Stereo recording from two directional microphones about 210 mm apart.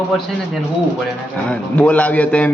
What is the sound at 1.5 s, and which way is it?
A man's voice, 5° left (ahead or behind).